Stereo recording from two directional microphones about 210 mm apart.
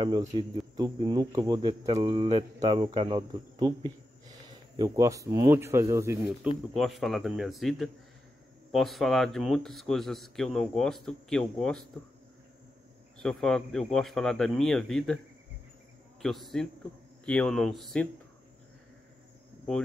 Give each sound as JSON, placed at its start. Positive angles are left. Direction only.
{"t": 0.3, "sound": "speech", "side_deg": -20}
{"t": 6.7, "sound": "a man's voice", "side_deg": 0}
{"t": 13.2, "sound": "a man's voice", "side_deg": 5}
{"t": 16.2, "sound": "a man's voice", "side_deg": 0}